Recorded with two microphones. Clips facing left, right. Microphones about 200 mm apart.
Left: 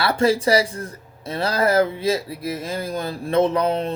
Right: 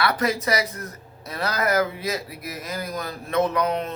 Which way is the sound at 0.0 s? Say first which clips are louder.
Left 5 dB; 30° left (ahead or behind).